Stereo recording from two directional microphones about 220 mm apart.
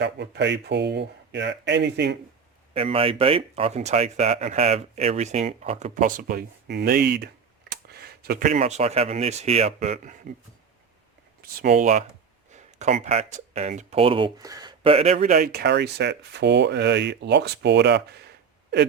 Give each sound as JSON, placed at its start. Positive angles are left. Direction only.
{"t": 0.0, "sound": "speech", "side_deg": -50}
{"t": 2.7, "sound": "speech", "side_deg": -25}
{"t": 11.4, "sound": "speech", "side_deg": -45}
{"t": 12.5, "sound": "speech", "side_deg": -30}
{"t": 15.4, "sound": "speech", "side_deg": -50}